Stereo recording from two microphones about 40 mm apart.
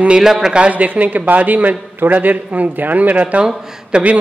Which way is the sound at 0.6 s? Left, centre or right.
Right.